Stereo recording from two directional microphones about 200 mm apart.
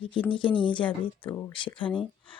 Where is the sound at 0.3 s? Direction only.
25° left (ahead or behind).